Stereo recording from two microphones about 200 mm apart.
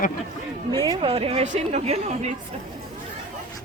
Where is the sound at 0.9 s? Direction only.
30° right (ahead or behind).